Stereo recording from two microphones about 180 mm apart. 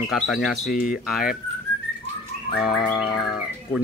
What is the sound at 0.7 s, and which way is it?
Speech, 55° left (ahead or behind).